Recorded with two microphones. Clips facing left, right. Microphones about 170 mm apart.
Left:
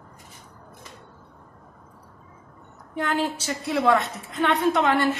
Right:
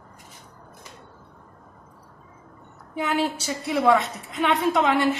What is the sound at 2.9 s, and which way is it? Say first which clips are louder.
A woman's voice: right 1 dB; 5° right (ahead or behind).